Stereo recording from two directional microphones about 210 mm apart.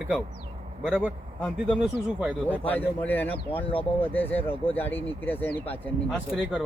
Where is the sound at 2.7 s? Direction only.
10° left (ahead or behind).